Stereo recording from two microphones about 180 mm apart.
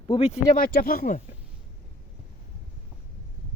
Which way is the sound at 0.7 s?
55° left (ahead or behind).